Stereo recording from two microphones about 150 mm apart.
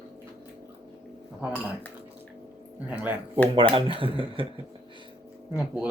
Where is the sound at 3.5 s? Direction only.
35° right (ahead or behind).